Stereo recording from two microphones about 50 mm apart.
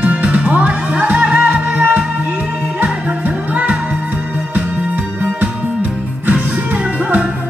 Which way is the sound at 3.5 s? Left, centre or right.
Right.